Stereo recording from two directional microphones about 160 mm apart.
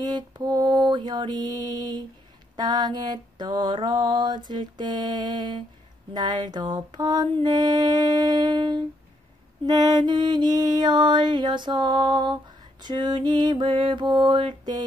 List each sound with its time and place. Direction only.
0.0 s mantra: 25° right (ahead or behind)